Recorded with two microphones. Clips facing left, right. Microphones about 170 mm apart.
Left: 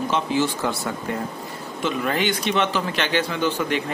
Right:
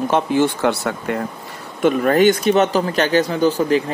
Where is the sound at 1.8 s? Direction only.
50° right (ahead or behind).